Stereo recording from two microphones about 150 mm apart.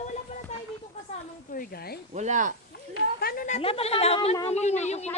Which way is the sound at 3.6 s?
40° left (ahead or behind).